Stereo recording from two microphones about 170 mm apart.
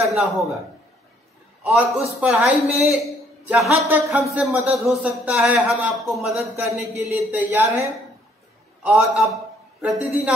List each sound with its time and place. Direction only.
0.0 s a man's voice: centre (ahead or behind)
1.6 s a man's voice: 10° right (ahead or behind)
7.0 s speech: 10° right (ahead or behind)
8.8 s a man's voice: 5° right (ahead or behind)